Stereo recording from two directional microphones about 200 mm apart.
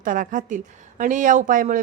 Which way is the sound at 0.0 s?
40° right (ahead or behind).